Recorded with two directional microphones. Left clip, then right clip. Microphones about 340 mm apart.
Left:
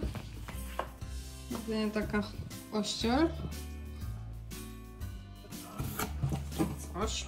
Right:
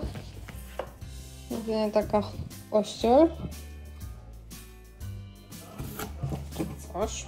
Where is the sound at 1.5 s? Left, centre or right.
Centre.